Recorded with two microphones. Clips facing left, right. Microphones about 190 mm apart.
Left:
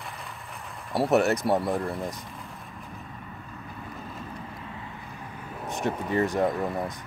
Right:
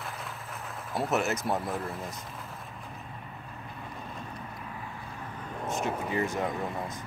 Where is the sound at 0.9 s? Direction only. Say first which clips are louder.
Left 7 dB; 35° left (ahead or behind).